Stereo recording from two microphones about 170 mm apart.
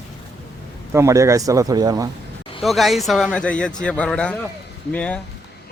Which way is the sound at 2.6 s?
Centre (ahead or behind).